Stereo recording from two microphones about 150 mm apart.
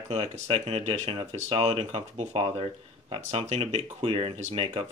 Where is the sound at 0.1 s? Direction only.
40° right (ahead or behind).